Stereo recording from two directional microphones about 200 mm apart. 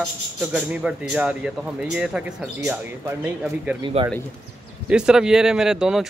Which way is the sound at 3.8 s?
25° right (ahead or behind).